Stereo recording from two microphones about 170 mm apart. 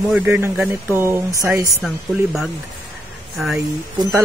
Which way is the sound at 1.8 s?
Centre (ahead or behind).